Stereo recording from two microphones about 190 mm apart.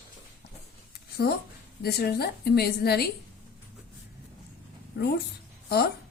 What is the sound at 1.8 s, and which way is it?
A woman's voice, 55° left (ahead or behind).